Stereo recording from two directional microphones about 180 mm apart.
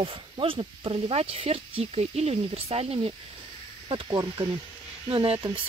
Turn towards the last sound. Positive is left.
turn(degrees=-30)  # may be behind; listen again after turning